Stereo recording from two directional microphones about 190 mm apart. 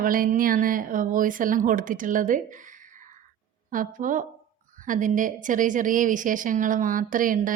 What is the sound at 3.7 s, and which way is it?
Speech, 45° right (ahead or behind).